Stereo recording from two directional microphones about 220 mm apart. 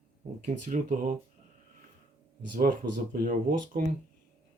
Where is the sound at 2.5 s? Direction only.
40° right (ahead or behind).